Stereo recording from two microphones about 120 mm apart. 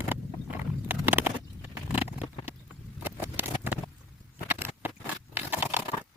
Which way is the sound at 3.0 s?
15° right (ahead or behind).